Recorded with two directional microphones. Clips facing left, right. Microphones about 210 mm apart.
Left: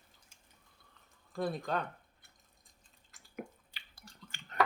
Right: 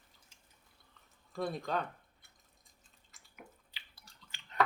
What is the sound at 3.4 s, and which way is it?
Drip, 50° left (ahead or behind).